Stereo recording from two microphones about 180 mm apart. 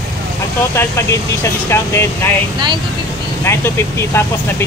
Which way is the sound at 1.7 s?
15° left (ahead or behind).